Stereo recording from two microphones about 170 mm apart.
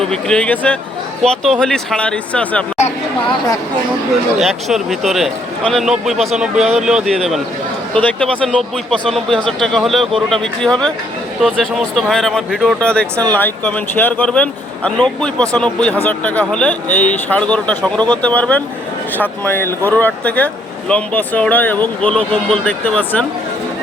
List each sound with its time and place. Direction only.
0.0 s speech: 5° left (ahead or behind)
3.2 s speech: 25° left (ahead or behind)
4.4 s speech: centre (ahead or behind)